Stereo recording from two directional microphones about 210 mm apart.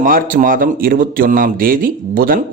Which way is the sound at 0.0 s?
40° right (ahead or behind).